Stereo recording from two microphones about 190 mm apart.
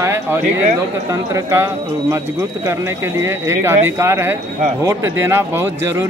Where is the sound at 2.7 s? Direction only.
15° right (ahead or behind).